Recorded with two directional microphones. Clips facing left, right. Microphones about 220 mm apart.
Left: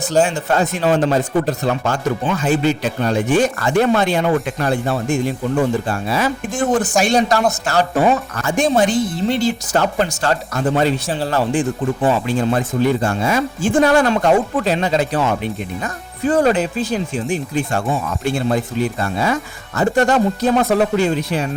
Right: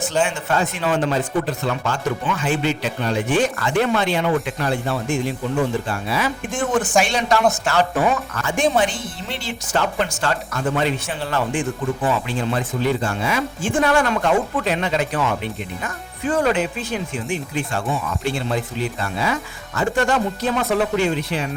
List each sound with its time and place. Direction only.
0.1 s speech: 40° left (ahead or behind)